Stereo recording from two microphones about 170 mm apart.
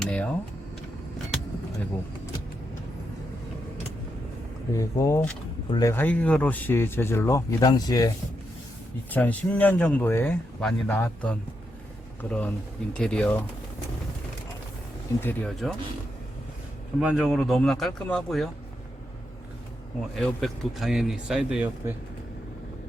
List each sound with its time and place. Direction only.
0.0 s speech: 5° left (ahead or behind)
4.7 s speech: 20° left (ahead or behind)
9.1 s speech: 10° left (ahead or behind)
15.2 s speech: 10° left (ahead or behind)
17.0 s speech: 5° right (ahead or behind)
20.1 s speech: centre (ahead or behind)